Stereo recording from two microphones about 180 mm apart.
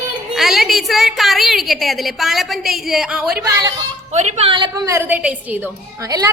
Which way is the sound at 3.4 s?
20° right (ahead or behind).